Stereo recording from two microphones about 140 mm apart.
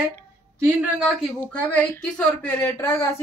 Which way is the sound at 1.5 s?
10° left (ahead or behind).